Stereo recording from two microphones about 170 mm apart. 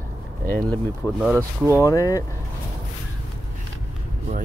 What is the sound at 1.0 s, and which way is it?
Speech, 10° right (ahead or behind).